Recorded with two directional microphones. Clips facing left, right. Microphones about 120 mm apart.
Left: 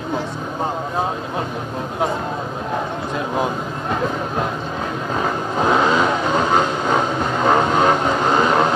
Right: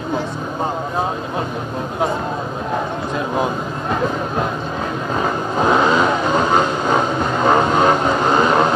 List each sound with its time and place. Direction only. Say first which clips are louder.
5.2 s vehicle: right 2 dB; 35° right (ahead or behind)